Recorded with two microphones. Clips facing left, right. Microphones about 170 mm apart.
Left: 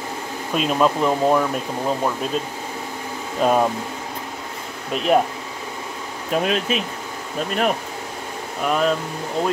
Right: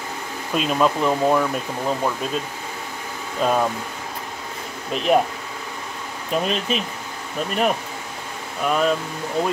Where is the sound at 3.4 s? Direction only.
15° left (ahead or behind).